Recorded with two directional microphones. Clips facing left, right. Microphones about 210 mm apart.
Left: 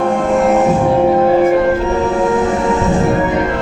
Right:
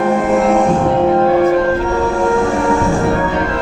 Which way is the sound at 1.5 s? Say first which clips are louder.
Left 1 dB; 20° left (ahead or behind).